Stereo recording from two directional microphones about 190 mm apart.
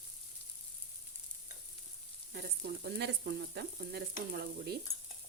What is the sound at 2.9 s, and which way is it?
Frying, 60° right (ahead or behind).